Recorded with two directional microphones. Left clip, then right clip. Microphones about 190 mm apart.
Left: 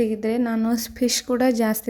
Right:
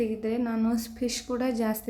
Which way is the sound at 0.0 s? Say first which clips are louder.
Left 6 dB; 40° left (ahead or behind).